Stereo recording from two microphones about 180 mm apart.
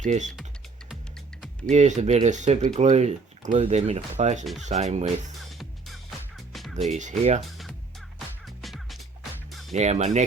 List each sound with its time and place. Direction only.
0.0 s speech: 40° right (ahead or behind)
1.7 s speech: 40° right (ahead or behind)
5.5 s music: centre (ahead or behind)
6.9 s speech: 40° right (ahead or behind)
8.4 s music: centre (ahead or behind)
9.7 s speech: 40° right (ahead or behind)